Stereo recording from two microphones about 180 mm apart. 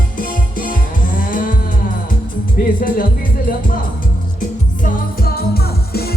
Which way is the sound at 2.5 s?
50° left (ahead or behind).